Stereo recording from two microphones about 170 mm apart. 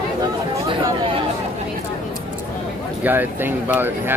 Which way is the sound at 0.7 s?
30° right (ahead or behind).